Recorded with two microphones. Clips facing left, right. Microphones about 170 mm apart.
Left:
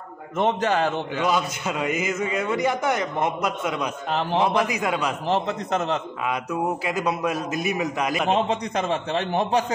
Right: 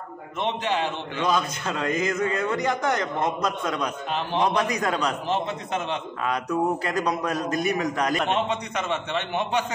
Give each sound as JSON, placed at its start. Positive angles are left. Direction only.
{"t": 0.4, "sound": "a man's voice", "side_deg": 45}
{"t": 1.2, "sound": "a man's voice", "side_deg": 10}
{"t": 4.1, "sound": "a man's voice", "side_deg": 40}
{"t": 4.4, "sound": "a man's voice", "side_deg": 5}
{"t": 5.3, "sound": "a man's voice", "side_deg": 40}
{"t": 6.2, "sound": "a man's voice", "side_deg": 5}
{"t": 8.3, "sound": "a man's voice", "side_deg": 35}